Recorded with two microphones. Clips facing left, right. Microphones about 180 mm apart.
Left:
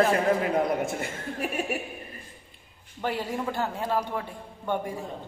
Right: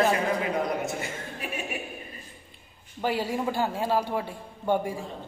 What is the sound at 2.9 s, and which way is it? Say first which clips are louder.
A man's voice: right 2 dB; 5° right (ahead or behind).